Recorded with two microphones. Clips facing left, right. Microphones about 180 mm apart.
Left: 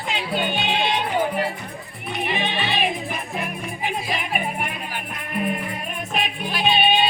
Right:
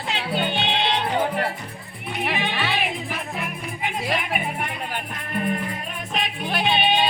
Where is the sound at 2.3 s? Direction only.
20° left (ahead or behind).